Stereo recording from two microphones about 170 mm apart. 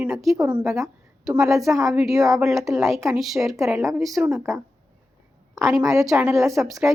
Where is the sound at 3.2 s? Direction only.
Centre (ahead or behind).